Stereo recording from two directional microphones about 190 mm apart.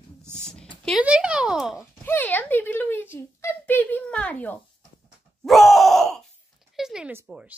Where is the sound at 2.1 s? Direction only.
10° left (ahead or behind).